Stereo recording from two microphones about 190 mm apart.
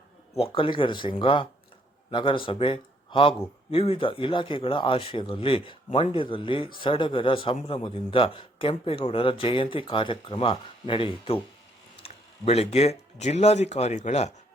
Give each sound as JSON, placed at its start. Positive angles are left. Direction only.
{"t": 0.3, "sound": "a man's voice", "side_deg": 30}